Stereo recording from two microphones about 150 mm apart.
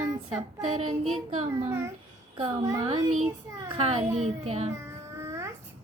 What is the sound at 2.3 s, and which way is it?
Speech, 30° right (ahead or behind).